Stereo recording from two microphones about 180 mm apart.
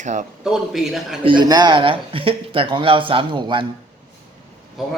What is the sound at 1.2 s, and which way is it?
Speech, 25° right (ahead or behind).